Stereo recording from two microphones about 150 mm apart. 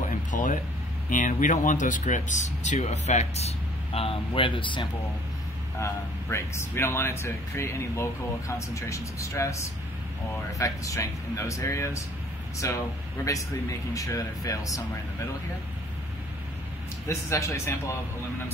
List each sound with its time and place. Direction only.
0.0 s a sound: 60° left (ahead or behind)
1.1 s speech: 60° left (ahead or behind); by 4.8 s 35° left (ahead or behind)
5.8 s speech: 15° left (ahead or behind)
17.1 s speech: 20° left (ahead or behind)